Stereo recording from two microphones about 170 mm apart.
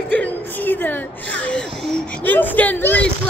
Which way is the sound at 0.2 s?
10° left (ahead or behind).